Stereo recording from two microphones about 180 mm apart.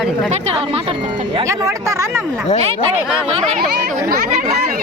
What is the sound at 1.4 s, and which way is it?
Speech, 15° right (ahead or behind).